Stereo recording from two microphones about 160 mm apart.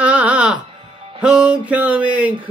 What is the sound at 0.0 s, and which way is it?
Music, 10° right (ahead or behind).